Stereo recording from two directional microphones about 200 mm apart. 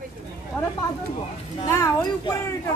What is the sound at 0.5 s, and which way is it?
Speech, centre (ahead or behind).